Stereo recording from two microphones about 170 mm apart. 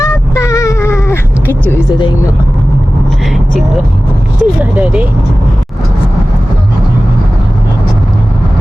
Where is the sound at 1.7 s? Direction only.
25° left (ahead or behind).